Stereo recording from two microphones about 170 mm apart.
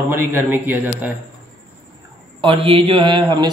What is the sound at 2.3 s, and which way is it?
A man's voice, 30° right (ahead or behind).